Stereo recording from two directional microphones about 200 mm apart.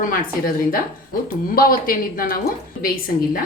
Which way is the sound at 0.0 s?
45° left (ahead or behind).